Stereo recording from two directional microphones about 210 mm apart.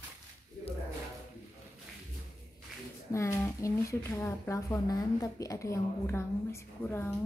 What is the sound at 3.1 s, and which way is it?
A woman's voice, 15° left (ahead or behind).